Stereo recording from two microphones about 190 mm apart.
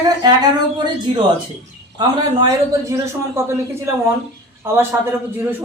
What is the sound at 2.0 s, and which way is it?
A man's voice, 20° right (ahead or behind).